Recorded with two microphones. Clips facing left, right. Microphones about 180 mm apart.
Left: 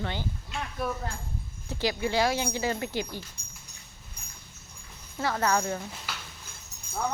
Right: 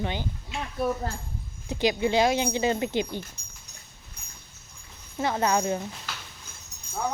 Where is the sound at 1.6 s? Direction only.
20° right (ahead or behind).